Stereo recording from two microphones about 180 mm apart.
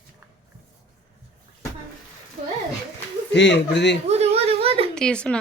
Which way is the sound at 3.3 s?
75° left (ahead or behind).